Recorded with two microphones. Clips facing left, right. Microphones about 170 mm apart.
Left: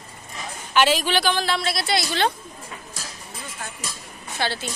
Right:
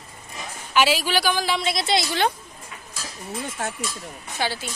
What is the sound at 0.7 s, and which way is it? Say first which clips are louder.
A woman's voice: left 1 dB; 5° right (ahead or behind).